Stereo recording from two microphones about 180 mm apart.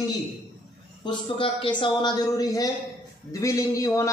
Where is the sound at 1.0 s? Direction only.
25° left (ahead or behind).